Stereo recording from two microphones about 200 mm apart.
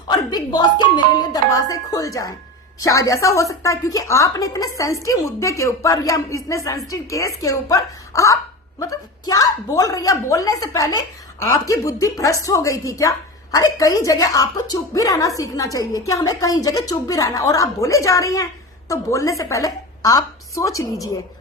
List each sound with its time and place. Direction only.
0.1 s a woman's voice: 20° left (ahead or behind)